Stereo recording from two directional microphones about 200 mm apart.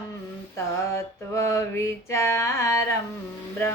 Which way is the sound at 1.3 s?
15° left (ahead or behind).